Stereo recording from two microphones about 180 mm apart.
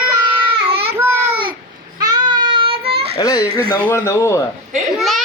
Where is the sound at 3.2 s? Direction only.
20° left (ahead or behind).